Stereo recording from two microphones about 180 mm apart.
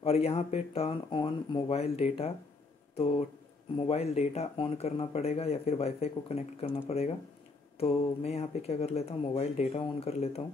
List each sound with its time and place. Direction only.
0.0 s speech: 35° left (ahead or behind)